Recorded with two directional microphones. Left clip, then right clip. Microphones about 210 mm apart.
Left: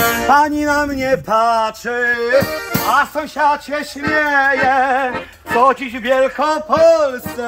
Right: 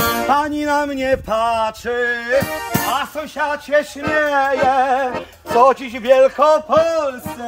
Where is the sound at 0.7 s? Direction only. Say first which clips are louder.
Left 1 dB; 20° right (ahead or behind).